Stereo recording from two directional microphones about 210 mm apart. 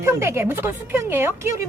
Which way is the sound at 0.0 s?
10° right (ahead or behind).